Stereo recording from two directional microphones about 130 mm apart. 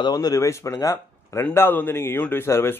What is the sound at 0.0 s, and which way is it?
Speech, 30° left (ahead or behind).